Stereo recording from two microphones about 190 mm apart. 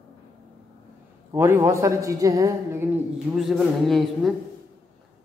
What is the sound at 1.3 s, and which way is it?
A man's voice, 15° right (ahead or behind).